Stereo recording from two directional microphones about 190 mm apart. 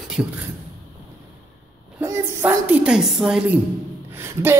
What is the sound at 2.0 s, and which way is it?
A woman's voice, 10° right (ahead or behind).